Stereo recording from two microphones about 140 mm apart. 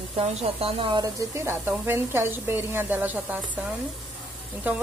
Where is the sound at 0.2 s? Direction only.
45° right (ahead or behind).